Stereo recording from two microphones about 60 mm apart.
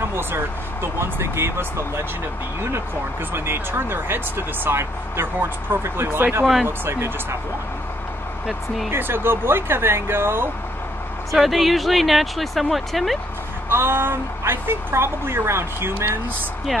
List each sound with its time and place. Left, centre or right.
0.9 s speech: right
3.3 s speech: right
8.5 s speech: centre
8.9 s speech: right
11.3 s speech: centre
13.7 s speech: right